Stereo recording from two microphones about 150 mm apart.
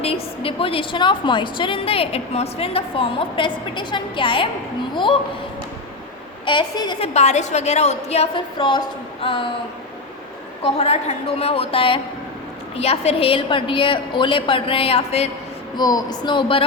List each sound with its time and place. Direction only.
0.0 s a woman's voice: 40° left (ahead or behind)
6.4 s a woman's voice: 30° left (ahead or behind)
7.1 s a woman's voice: 50° left (ahead or behind)
8.5 s a woman's voice: 30° left (ahead or behind)
10.6 s a woman's voice: 45° left (ahead or behind)
15.7 s speech: 25° left (ahead or behind)